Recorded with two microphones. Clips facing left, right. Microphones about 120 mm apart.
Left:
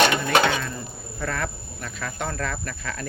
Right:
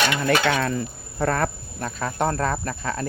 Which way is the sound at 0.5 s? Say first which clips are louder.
Right 6 dB; 75° right (ahead or behind).